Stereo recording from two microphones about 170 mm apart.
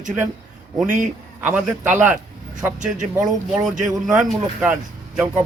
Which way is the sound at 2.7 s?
45° right (ahead or behind).